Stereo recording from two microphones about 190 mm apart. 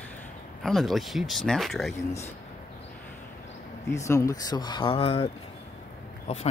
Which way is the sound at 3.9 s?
15° left (ahead or behind).